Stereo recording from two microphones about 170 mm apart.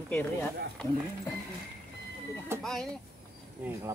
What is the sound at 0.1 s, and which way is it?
Speech, 10° left (ahead or behind).